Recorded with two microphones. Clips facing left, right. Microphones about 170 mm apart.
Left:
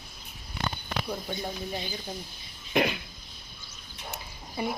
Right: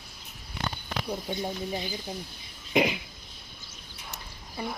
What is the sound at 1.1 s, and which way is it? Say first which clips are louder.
Speech: right 4 dB; 15° right (ahead or behind).